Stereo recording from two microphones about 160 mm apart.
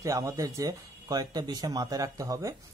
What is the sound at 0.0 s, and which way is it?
Speech, 20° right (ahead or behind).